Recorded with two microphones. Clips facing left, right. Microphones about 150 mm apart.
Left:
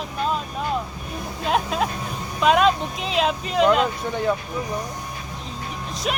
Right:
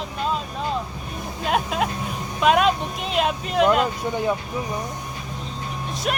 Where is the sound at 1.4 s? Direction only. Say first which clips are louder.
Even; 5° right (ahead or behind).